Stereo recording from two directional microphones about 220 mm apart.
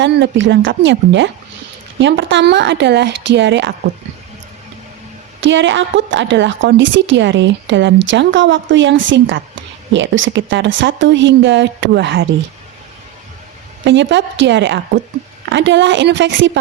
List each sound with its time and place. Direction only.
0.0 s a woman's voice: 55° right (ahead or behind)
5.4 s a woman's voice: 55° right (ahead or behind)
13.8 s a woman's voice: 55° right (ahead or behind)